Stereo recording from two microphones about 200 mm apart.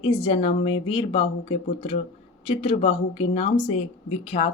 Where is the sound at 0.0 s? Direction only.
25° left (ahead or behind).